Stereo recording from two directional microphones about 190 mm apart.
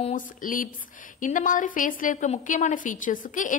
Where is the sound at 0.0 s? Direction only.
45° left (ahead or behind).